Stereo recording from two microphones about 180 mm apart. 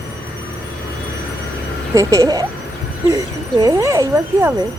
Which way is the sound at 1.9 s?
20° right (ahead or behind).